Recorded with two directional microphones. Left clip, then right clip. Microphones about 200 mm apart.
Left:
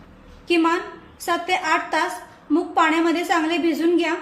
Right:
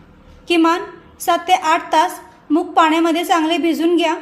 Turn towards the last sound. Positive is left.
turn(degrees=-40)  # may be behind; listen again after turning